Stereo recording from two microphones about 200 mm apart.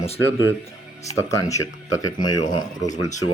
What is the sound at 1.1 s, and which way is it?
Speech, 15° left (ahead or behind).